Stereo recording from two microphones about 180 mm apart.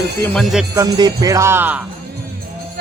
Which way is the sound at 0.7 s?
20° right (ahead or behind).